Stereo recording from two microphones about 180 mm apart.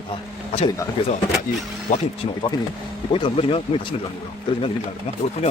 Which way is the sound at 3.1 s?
30° left (ahead or behind).